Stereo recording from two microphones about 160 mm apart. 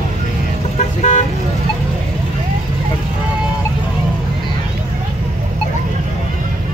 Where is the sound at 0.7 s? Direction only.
45° left (ahead or behind).